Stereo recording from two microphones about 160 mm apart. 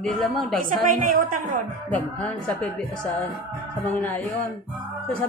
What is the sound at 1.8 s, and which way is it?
Speech, 10° left (ahead or behind).